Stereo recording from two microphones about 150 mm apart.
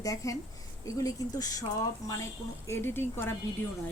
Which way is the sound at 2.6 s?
15° left (ahead or behind).